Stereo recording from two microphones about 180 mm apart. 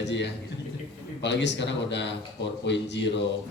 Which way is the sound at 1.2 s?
75° left (ahead or behind).